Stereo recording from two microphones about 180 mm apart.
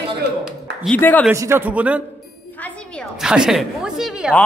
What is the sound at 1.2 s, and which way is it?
Speech, 15° right (ahead or behind).